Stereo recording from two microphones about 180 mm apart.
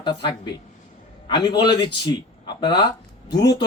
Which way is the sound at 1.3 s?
25° left (ahead or behind).